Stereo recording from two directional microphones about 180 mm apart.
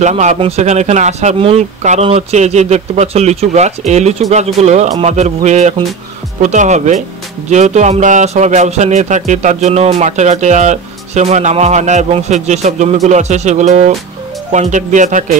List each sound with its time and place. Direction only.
0.0 s speech: 40° right (ahead or behind)